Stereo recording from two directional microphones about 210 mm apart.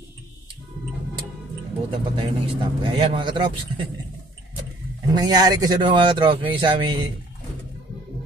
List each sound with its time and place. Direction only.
1.9 s speech: 20° right (ahead or behind)
5.1 s speech: 20° right (ahead or behind)